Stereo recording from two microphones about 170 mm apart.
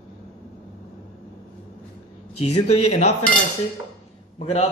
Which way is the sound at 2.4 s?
40° left (ahead or behind).